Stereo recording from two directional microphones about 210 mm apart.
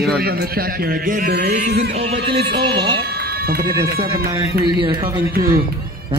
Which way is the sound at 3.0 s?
50° right (ahead or behind).